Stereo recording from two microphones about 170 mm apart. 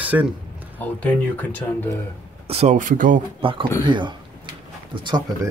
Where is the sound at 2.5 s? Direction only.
45° right (ahead or behind).